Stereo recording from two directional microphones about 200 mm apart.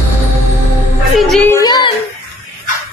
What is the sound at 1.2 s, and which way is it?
Music, 5° left (ahead or behind).